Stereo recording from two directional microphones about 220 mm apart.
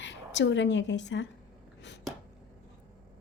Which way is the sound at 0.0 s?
55° left (ahead or behind).